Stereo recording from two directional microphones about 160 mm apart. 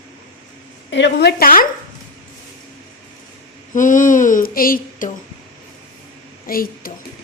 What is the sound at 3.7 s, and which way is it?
A woman's voice, 55° left (ahead or behind).